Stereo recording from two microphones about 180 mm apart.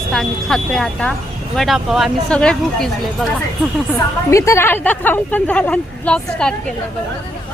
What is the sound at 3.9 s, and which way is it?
A woman's voice, 15° left (ahead or behind).